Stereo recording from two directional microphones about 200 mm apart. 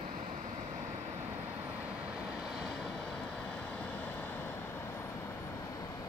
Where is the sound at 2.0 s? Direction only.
5° right (ahead or behind); by 6.0 s 15° left (ahead or behind).